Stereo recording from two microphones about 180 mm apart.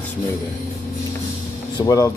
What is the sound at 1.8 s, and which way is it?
Speech, 20° left (ahead or behind).